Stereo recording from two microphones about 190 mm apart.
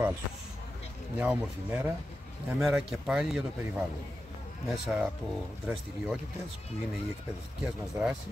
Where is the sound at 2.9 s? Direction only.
Centre (ahead or behind).